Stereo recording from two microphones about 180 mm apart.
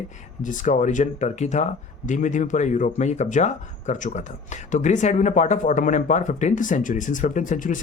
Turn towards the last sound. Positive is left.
turn(degrees=45)  # may be behind; listen again after turning